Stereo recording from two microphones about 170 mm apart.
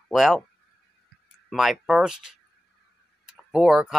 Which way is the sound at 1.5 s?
Centre (ahead or behind).